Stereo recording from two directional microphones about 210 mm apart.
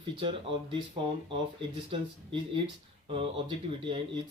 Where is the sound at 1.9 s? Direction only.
25° right (ahead or behind).